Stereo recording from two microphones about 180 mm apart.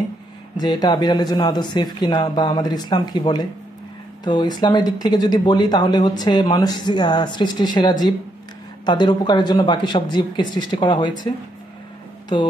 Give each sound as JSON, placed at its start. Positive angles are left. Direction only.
{"t": 0.6, "sound": "speech", "side_deg": 25}
{"t": 12.3, "sound": "speech", "side_deg": 25}